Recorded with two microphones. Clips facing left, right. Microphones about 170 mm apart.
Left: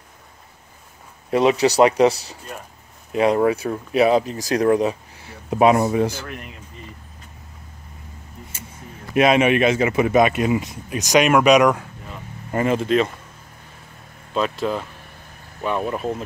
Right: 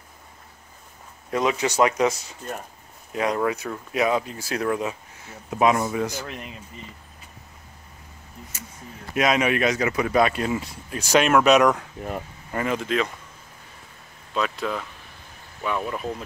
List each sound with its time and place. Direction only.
1.3 s speech: 30° left (ahead or behind)
6.2 s speech: 20° right (ahead or behind)
9.1 s speech: 25° left (ahead or behind); by 11.8 s 10° left (ahead or behind)
12.5 s speech: 25° left (ahead or behind)
14.3 s speech: 30° left (ahead or behind)